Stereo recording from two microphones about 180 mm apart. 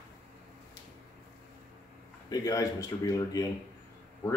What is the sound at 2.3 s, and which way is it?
Speech, 20° left (ahead or behind).